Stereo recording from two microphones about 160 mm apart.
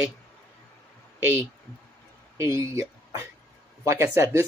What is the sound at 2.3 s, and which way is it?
Speech, 20° right (ahead or behind).